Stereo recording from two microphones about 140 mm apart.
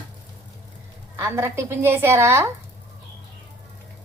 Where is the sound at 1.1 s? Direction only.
15° right (ahead or behind).